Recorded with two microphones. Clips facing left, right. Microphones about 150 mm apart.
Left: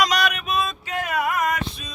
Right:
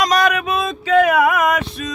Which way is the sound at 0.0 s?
50° right (ahead or behind).